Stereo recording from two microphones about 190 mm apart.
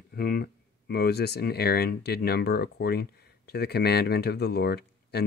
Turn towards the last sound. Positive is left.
turn(degrees=55)  # may be behind; listen again after turning